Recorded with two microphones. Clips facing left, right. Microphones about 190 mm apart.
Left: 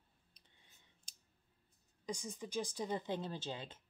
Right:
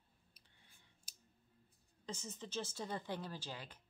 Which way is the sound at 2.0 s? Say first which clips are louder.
Left 4 dB; 15° left (ahead or behind).